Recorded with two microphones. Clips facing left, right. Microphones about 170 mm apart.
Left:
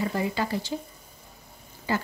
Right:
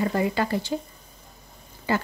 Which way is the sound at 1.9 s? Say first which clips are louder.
Right 3 dB; 60° right (ahead or behind).